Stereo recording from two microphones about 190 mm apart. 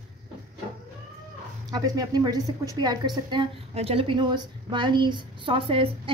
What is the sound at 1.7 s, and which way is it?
A woman's voice, 20° right (ahead or behind).